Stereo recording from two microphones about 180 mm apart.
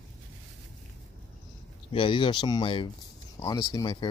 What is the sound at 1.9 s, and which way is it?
Speech, 30° left (ahead or behind).